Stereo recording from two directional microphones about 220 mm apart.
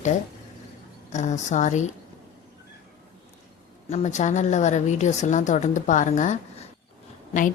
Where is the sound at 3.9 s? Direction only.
30° left (ahead or behind).